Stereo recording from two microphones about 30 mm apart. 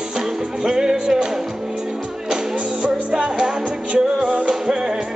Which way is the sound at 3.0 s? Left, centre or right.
Right.